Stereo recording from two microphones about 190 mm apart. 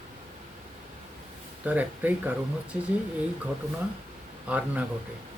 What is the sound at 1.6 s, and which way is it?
Speech, 10° right (ahead or behind).